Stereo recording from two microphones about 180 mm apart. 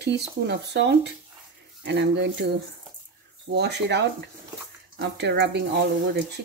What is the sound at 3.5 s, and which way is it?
Speech, 70° right (ahead or behind).